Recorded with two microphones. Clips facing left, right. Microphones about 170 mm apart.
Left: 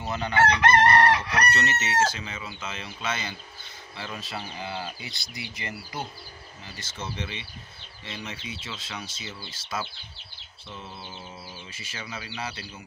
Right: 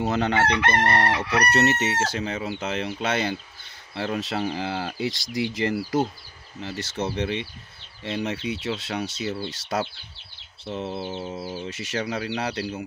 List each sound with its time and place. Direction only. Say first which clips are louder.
0.0 s chicken: right 2 dB; 80° right; by 3.3 s 65° right (ahead or behind)
3.9 s speech: right 9 dB; 65° right (ahead or behind); by 6.0 s 85° right
6.6 s speech: right 10 dB; 70° right (ahead or behind)
11.2 s bird: right 11 dB; 45° right (ahead or behind)
11.7 s speech: right 10 dB; 75° right (ahead or behind)